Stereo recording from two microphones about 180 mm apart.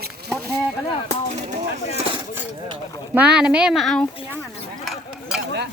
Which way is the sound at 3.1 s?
5° right (ahead or behind).